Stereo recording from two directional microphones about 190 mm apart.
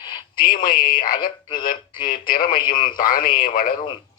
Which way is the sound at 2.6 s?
25° left (ahead or behind).